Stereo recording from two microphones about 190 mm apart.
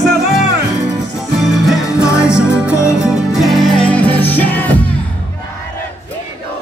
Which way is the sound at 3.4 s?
Centre (ahead or behind).